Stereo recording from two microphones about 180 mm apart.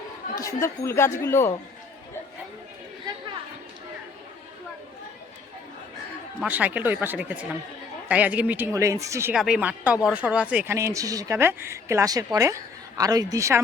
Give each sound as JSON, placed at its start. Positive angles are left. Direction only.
{"t": 0.3, "sound": "speech", "side_deg": 15}
{"t": 6.4, "sound": "speech", "side_deg": -10}
{"t": 9.3, "sound": "speech", "side_deg": -5}